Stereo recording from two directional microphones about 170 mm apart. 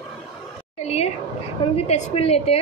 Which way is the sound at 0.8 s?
40° left (ahead or behind).